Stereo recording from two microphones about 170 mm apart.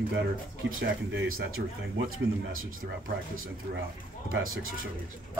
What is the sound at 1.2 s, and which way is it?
Speech, 60° right (ahead or behind).